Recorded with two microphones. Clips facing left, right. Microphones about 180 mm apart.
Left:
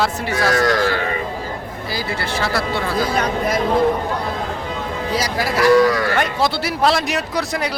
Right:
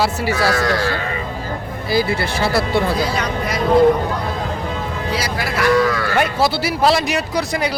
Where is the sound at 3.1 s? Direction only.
50° left (ahead or behind).